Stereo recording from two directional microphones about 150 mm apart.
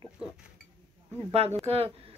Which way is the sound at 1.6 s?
40° right (ahead or behind).